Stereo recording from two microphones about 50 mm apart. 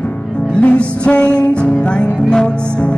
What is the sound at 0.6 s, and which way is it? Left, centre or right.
Music, left.